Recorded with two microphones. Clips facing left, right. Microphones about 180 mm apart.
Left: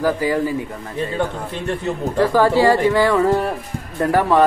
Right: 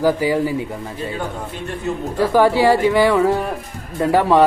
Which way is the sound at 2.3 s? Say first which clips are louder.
Right 2 dB; 15° right (ahead or behind).